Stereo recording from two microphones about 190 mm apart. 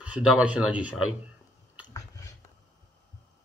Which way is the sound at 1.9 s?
15° left (ahead or behind).